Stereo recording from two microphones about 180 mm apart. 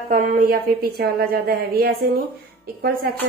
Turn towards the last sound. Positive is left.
turn(degrees=-55)  # may be behind; listen again after turning